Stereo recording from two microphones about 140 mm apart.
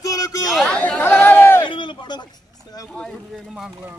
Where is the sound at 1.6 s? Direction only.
35° left (ahead or behind).